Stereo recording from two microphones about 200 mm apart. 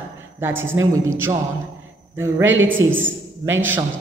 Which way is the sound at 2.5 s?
70° right (ahead or behind).